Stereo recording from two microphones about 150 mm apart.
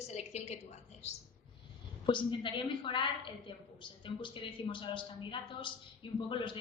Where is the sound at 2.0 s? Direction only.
35° left (ahead or behind).